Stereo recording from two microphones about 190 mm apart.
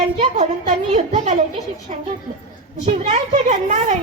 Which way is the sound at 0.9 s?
35° right (ahead or behind).